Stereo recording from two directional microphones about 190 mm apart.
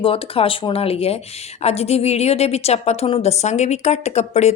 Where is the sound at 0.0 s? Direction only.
30° left (ahead or behind).